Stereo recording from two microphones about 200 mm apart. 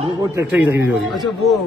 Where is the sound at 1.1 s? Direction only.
Centre (ahead or behind).